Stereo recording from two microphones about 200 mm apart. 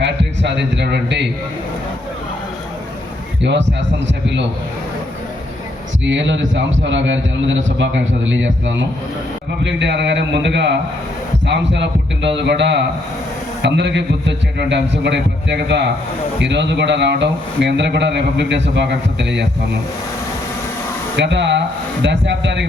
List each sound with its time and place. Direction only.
0.0 s a sound: 60° right (ahead or behind)
3.4 s speech: 60° right (ahead or behind)
6.1 s a man's voice: 65° right (ahead or behind)
21.2 s speech: 60° right (ahead or behind)